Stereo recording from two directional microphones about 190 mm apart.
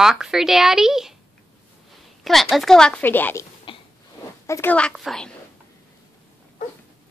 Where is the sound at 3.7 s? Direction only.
25° left (ahead or behind).